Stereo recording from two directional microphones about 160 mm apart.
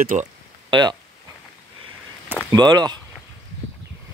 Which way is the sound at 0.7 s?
25° right (ahead or behind).